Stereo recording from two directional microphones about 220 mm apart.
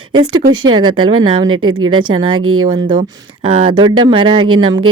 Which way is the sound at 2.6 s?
20° right (ahead or behind).